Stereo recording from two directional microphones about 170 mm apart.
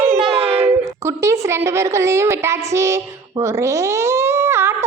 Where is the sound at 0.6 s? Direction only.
15° right (ahead or behind).